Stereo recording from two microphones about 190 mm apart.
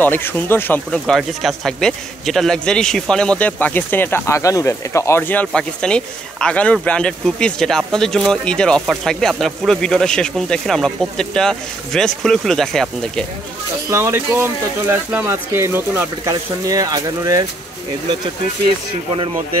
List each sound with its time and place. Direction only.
0.0 s speech: 10° left (ahead or behind)
13.8 s speech: 15° right (ahead or behind)